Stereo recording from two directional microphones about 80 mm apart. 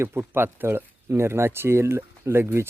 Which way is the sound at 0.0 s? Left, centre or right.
Right.